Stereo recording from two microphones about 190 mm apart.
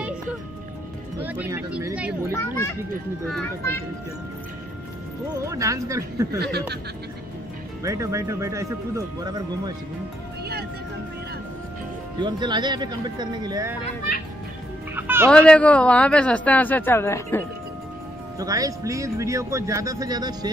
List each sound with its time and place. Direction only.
1.2 s speech: 10° right (ahead or behind)
2.3 s speech: 15° left (ahead or behind)
5.4 s speech: 15° right (ahead or behind)
7.8 s speech: 15° right (ahead or behind)
12.2 s speech: 25° right (ahead or behind)
15.0 s music: 10° right (ahead or behind)
15.2 s speech: 5° left (ahead or behind)
18.4 s speech: 20° right (ahead or behind)